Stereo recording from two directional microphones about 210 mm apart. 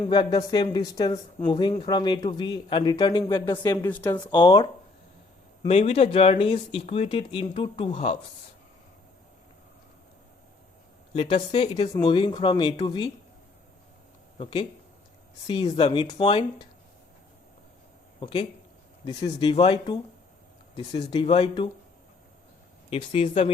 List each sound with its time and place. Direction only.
0.0 s speech: 20° left (ahead or behind)
4.4 s speech: 20° left (ahead or behind)
11.1 s speech: 30° left (ahead or behind)
14.3 s speech: 25° left (ahead or behind)
18.2 s speech: 25° left (ahead or behind)
22.9 s speech: 25° left (ahead or behind)